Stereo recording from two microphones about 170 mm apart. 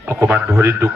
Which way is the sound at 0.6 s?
15° right (ahead or behind).